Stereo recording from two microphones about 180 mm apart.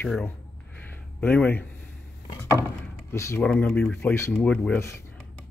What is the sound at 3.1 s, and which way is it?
Speech, 15° left (ahead or behind).